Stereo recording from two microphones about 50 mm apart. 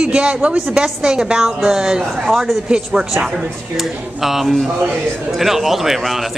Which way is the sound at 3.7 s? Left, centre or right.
Centre.